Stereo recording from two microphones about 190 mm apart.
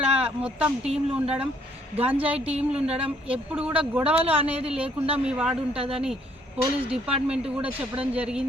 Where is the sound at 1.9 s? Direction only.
10° right (ahead or behind).